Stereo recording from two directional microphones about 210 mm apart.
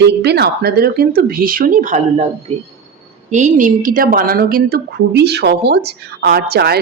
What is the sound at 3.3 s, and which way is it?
A woman's voice, 35° right (ahead or behind).